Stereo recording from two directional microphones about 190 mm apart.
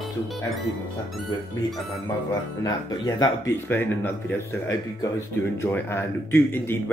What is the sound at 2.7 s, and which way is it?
Speech, 20° left (ahead or behind).